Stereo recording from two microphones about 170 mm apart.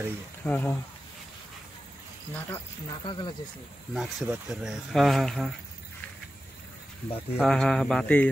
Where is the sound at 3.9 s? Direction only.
Centre (ahead or behind).